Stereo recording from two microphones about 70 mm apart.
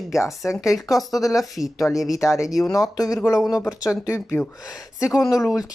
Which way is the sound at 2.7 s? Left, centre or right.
Left.